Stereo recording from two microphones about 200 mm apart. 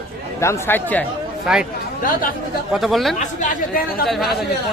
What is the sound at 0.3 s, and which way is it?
Speech, 15° left (ahead or behind).